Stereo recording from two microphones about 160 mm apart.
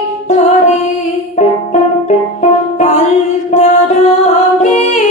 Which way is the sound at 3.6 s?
45° left (ahead or behind).